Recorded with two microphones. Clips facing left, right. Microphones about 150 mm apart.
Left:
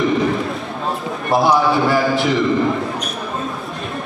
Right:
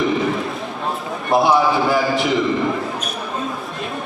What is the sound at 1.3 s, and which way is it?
A man's voice, centre (ahead or behind).